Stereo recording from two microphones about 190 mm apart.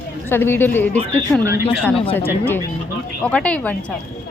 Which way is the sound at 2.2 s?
10° left (ahead or behind).